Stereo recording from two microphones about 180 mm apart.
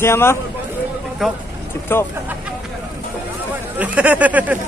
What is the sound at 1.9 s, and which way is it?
Speech, 10° left (ahead or behind).